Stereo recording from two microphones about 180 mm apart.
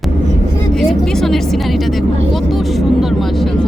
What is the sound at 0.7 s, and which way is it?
Speech, 5° left (ahead or behind).